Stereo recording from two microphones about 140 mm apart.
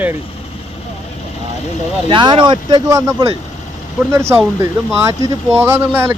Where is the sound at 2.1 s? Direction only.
35° right (ahead or behind).